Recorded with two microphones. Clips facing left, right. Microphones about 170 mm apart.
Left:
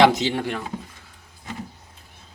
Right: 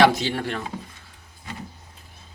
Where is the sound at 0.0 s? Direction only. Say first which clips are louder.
Left 1 dB; 20° left (ahead or behind).